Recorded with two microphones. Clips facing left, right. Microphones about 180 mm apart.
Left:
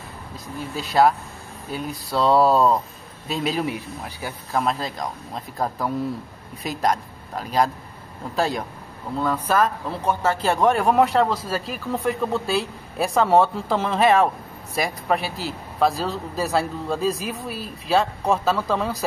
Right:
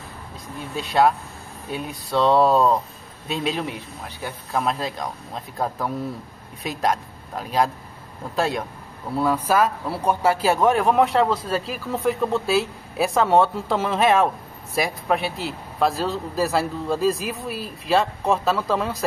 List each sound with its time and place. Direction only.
0.7 s speech: centre (ahead or behind)